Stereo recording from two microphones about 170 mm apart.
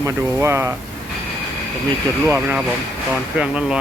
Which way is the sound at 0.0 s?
15° right (ahead or behind).